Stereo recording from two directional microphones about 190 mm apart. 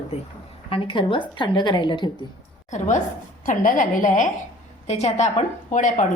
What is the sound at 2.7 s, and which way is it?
A woman's voice, 40° left (ahead or behind).